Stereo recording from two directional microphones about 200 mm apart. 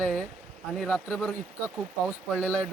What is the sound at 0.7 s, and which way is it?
Speech, 5° left (ahead or behind).